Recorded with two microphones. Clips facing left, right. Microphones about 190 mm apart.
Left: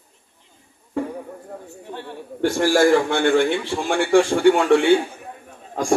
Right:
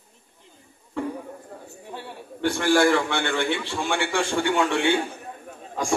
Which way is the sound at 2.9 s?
50° left (ahead or behind).